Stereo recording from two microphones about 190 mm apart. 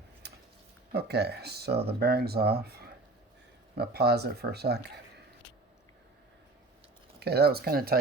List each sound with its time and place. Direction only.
0.2 s a sound: 60° right (ahead or behind)
0.9 s speech: 60° right (ahead or behind)
7.2 s speech: 55° right (ahead or behind)